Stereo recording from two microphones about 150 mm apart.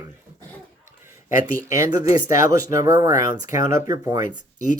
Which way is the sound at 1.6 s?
20° right (ahead or behind).